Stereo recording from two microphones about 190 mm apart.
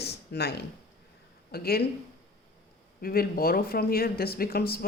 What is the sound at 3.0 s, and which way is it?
Speech, 50° left (ahead or behind).